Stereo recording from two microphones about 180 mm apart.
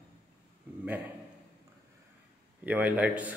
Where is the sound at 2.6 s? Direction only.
10° right (ahead or behind).